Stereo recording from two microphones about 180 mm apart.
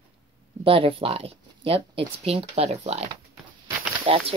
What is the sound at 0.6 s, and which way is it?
Speech, 30° right (ahead or behind).